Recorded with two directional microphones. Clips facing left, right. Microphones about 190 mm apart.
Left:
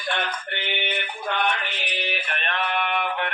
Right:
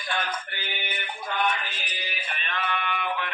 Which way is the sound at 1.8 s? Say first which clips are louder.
Left 7 dB; 70° left (ahead or behind).